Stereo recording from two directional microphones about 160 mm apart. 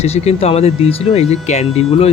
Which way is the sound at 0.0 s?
40° left (ahead or behind).